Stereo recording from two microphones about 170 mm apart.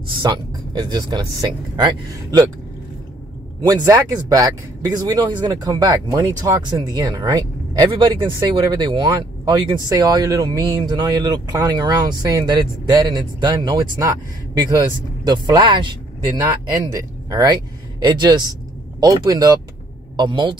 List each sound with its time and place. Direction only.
0.2 s speech: 25° right (ahead or behind)
3.6 s speech: 20° right (ahead or behind)
15.2 s speech: 25° right (ahead or behind)